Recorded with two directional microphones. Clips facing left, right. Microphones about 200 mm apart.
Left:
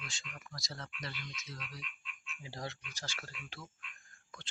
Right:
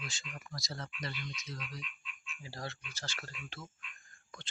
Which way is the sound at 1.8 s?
60° left (ahead or behind).